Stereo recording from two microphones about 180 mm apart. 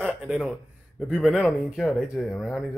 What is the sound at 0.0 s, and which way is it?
Speech, 5° right (ahead or behind).